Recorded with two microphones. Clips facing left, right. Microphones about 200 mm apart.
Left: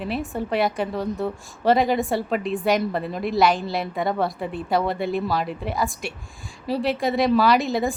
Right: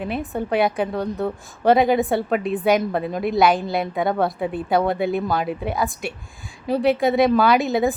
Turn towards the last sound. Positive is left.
turn(degrees=0)  # may be behind; listen again after turning